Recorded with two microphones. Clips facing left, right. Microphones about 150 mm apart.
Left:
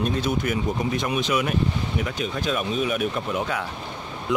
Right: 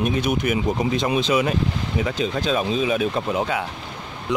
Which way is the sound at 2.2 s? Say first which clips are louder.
Right 4 dB; 90° right.